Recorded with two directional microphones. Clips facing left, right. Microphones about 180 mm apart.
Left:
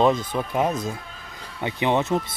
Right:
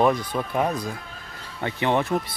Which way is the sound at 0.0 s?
20° left (ahead or behind).